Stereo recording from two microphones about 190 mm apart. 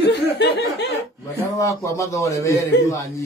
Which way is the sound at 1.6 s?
15° left (ahead or behind).